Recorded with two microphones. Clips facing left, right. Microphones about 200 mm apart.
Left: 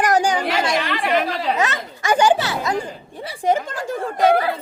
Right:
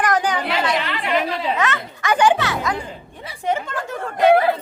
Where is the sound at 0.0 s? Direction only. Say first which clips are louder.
Left 2 dB; 35° left (ahead or behind).